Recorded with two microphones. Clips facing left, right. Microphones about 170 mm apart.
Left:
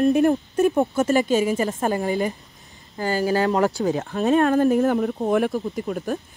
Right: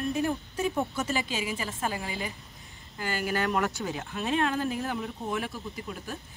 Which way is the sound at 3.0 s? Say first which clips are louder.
Left 9 dB; 35° left (ahead or behind).